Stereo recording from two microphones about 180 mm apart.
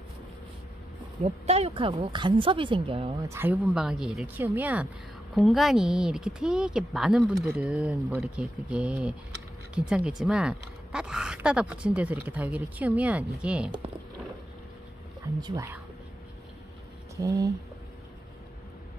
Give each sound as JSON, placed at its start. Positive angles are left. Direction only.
{"t": 1.2, "sound": "speech", "side_deg": -35}
{"t": 3.3, "sound": "speech", "side_deg": -10}
{"t": 15.4, "sound": "speech", "side_deg": -15}
{"t": 17.2, "sound": "speech", "side_deg": -20}